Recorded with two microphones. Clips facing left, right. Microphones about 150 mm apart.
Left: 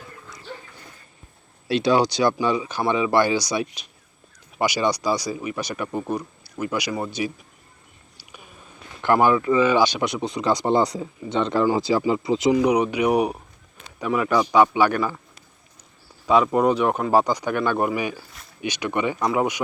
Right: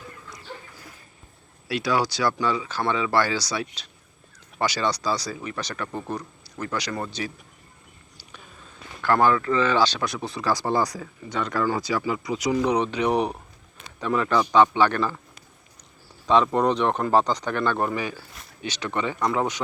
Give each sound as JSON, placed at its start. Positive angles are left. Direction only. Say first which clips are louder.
{"t": 1.6, "sound": "speech", "louder": "left 5 dB", "side_deg": 25}
{"t": 9.0, "sound": "speech", "louder": "left 2 dB", "side_deg": 15}
{"t": 12.5, "sound": "speech", "louder": "left 3 dB", "side_deg": 10}
{"t": 16.2, "sound": "speech", "louder": "left 2 dB", "side_deg": 10}